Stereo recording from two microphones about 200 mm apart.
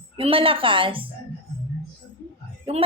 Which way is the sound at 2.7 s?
25° right (ahead or behind).